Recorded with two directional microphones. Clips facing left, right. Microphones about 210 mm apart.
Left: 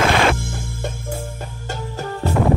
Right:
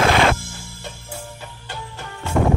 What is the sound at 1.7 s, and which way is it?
Music, 40° left (ahead or behind).